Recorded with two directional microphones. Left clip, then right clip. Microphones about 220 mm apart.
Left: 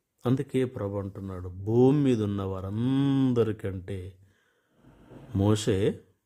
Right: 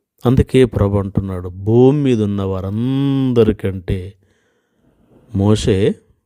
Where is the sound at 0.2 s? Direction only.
40° right (ahead or behind).